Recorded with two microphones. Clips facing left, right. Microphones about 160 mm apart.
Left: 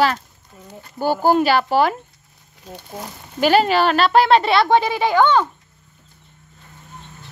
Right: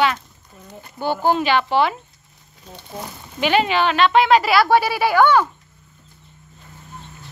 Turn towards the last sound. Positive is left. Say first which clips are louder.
# even
turn(degrees=20)  # may be behind; listen again after turning